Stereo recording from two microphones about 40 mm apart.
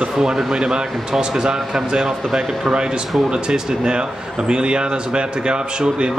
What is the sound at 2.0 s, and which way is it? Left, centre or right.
Speech, centre.